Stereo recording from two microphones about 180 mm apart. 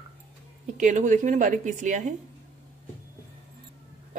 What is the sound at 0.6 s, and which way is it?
A woman's voice, 45° right (ahead or behind).